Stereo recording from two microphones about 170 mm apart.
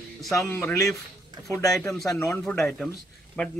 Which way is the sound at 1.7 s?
Centre (ahead or behind).